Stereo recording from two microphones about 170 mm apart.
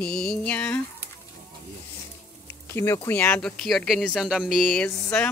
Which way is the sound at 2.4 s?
15° left (ahead or behind).